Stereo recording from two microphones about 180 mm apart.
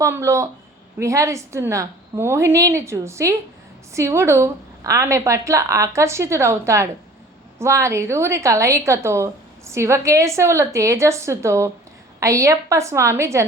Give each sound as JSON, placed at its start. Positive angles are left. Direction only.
{"t": 0.0, "sound": "a woman's voice", "side_deg": -15}